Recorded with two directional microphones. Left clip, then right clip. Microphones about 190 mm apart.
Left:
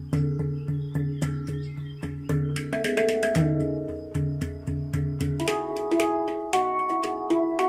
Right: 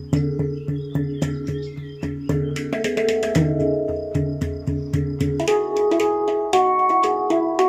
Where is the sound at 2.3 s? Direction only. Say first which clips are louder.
Right 5 dB; 20° right (ahead or behind).